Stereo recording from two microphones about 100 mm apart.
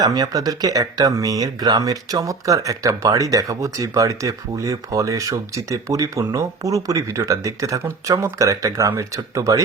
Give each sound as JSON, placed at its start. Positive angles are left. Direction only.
{"t": 0.0, "sound": "speech", "side_deg": -40}